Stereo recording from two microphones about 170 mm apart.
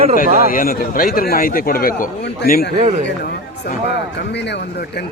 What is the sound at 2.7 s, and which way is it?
Speech, 45° right (ahead or behind).